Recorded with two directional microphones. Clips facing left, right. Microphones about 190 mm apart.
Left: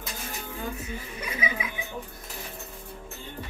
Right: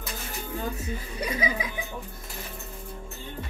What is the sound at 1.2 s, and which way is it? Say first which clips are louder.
Music: right 4 dB; 35° right (ahead or behind).